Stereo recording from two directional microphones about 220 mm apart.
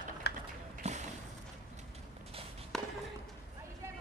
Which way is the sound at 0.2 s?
50° left (ahead or behind).